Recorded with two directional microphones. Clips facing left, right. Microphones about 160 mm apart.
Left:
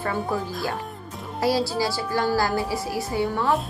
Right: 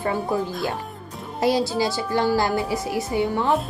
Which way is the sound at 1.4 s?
20° right (ahead or behind).